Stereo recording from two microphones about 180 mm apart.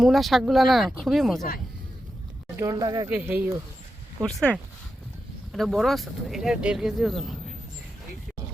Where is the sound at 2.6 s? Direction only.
20° right (ahead or behind).